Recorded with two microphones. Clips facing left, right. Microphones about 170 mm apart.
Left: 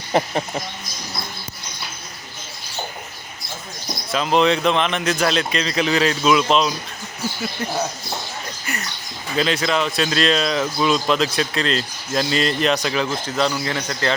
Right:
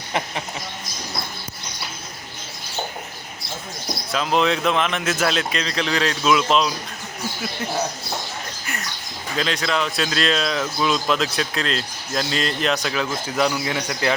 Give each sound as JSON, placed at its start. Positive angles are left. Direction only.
{"t": 0.1, "sound": "speech", "side_deg": 35}
{"t": 4.1, "sound": "speech", "side_deg": 0}
{"t": 8.6, "sound": "a sound", "side_deg": 0}
{"t": 9.4, "sound": "a man's voice", "side_deg": 0}